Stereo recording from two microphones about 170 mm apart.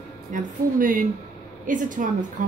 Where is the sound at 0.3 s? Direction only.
50° right (ahead or behind).